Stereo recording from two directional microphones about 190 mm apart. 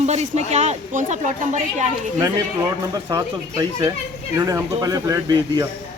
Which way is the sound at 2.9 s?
15° right (ahead or behind).